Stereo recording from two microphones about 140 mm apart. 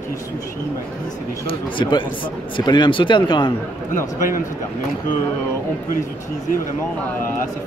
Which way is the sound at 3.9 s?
75° left (ahead or behind).